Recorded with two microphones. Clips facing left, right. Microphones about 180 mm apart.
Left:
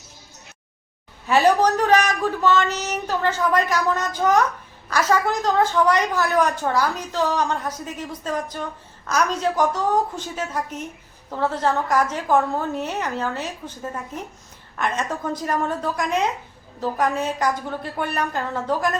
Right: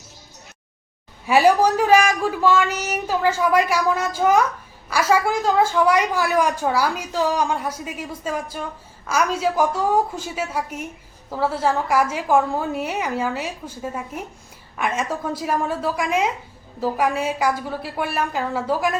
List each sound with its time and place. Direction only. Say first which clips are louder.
1.3 s a woman's voice: right 1 dB; 10° right (ahead or behind)